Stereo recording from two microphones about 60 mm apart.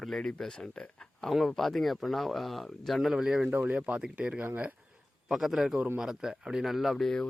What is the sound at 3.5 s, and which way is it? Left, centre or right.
Speech, right.